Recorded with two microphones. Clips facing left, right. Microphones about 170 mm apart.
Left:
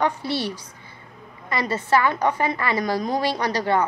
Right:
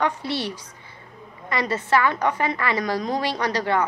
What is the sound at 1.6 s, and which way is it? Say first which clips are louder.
Speech: left 1 dB; 35° left (ahead or behind).